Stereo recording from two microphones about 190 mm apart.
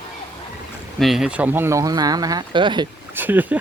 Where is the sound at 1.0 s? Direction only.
Centre (ahead or behind); by 2.8 s 25° right (ahead or behind).